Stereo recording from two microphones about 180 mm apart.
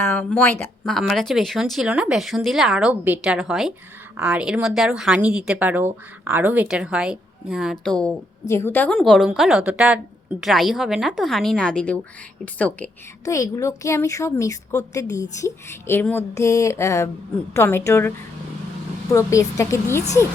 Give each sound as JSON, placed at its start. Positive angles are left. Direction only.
{"t": 0.0, "sound": "speech", "side_deg": 10}
{"t": 8.4, "sound": "a woman's voice", "side_deg": 15}
{"t": 13.2, "sound": "a woman's voice", "side_deg": 20}
{"t": 19.1, "sound": "a woman's voice", "side_deg": 15}